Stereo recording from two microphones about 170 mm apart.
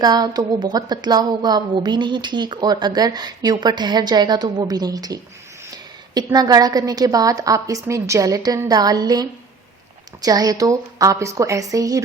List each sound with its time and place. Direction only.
0.0 s a woman's voice: 25° right (ahead or behind)